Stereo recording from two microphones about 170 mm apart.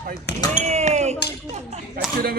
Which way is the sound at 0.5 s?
40° right (ahead or behind).